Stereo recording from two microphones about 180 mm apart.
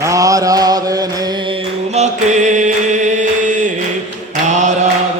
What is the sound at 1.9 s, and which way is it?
Chant, 40° right (ahead or behind).